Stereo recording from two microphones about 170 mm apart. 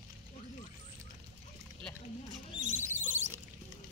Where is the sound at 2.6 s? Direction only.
45° right (ahead or behind).